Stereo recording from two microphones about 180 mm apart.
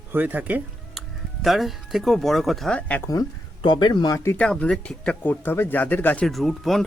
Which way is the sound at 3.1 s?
25° left (ahead or behind).